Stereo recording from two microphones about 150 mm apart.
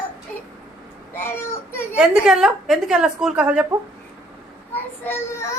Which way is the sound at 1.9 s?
5° right (ahead or behind).